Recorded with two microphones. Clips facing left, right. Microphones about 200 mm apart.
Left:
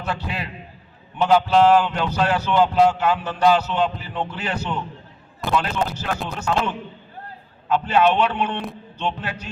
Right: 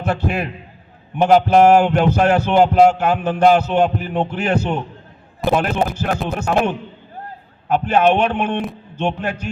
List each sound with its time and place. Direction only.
0.0 s speech: 50° right (ahead or behind)